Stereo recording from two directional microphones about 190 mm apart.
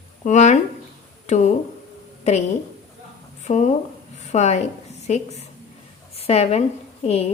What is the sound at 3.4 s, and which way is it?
A woman's voice, 40° left (ahead or behind).